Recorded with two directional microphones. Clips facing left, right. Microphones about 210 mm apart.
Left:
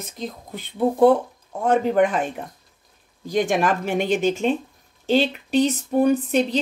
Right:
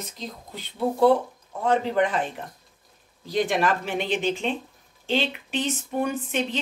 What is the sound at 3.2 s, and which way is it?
Speech, 50° left (ahead or behind).